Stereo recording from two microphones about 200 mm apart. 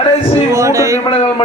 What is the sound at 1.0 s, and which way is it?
Speech, 25° left (ahead or behind).